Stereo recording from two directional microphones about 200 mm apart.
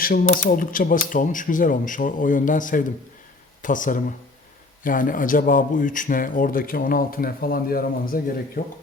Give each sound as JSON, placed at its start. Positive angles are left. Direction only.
{"t": 0.0, "sound": "speech", "side_deg": 45}